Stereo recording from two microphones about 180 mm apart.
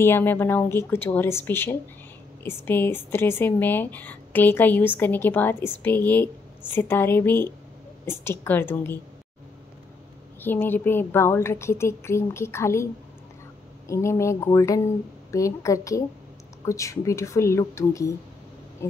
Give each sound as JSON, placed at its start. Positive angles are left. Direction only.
{"t": 0.0, "sound": "speech", "side_deg": 10}
{"t": 10.4, "sound": "speech", "side_deg": 10}